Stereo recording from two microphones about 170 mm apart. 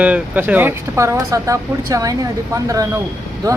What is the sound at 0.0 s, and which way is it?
Speech, 10° right (ahead or behind).